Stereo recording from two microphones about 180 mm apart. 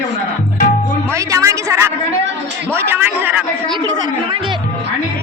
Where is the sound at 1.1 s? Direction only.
15° right (ahead or behind).